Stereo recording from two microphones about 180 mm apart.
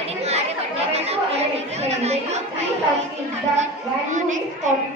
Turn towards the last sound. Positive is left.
turn(degrees=-45)  # may be behind; listen again after turning